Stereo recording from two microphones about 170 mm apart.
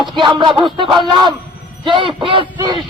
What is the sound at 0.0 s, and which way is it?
Speech, 25° right (ahead or behind).